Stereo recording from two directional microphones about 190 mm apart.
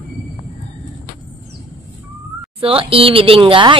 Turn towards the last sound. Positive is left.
turn(degrees=-25)  # may be behind; listen again after turning